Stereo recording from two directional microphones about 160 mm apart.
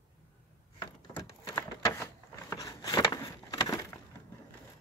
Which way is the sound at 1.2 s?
20° left (ahead or behind).